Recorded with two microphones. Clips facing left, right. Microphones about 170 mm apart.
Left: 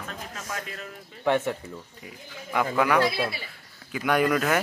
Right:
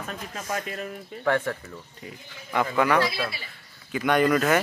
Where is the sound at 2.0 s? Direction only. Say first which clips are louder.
Left 1 dB; 5° left (ahead or behind).